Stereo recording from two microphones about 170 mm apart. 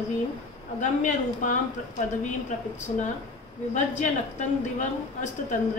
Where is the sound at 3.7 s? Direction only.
45° left (ahead or behind).